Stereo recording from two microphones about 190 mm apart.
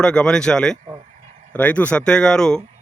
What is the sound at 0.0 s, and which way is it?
A man's voice, 5° left (ahead or behind).